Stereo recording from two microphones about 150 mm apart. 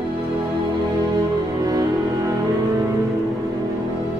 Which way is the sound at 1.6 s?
25° right (ahead or behind).